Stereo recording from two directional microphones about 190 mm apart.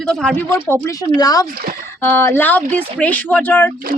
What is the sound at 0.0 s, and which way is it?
Speech, 5° left (ahead or behind).